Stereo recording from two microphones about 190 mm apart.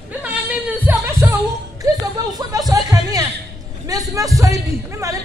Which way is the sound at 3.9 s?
20° right (ahead or behind).